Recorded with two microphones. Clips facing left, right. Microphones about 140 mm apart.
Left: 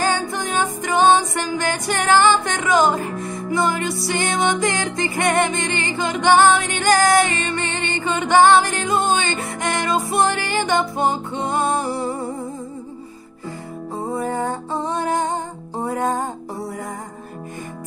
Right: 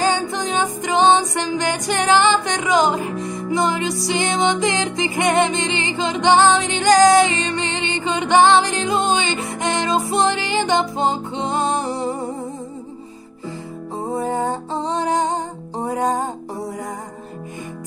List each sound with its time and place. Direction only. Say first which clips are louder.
0.0 s music: right 2 dB; 20° right (ahead or behind)
13.9 s music: right 1 dB; 25° right (ahead or behind)